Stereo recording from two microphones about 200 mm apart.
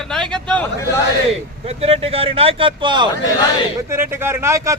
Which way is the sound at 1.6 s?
30° right (ahead or behind).